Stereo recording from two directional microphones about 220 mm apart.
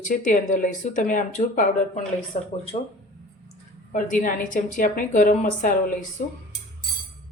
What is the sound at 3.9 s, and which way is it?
Speech, 35° left (ahead or behind).